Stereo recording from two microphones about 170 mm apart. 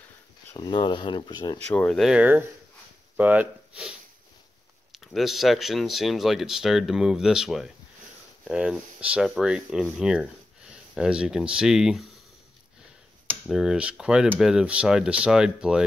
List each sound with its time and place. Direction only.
0.6 s speech: 25° left (ahead or behind)
1.7 s speech: 5° left (ahead or behind)
4.9 s speech: centre (ahead or behind)
13.5 s speech: 5° right (ahead or behind)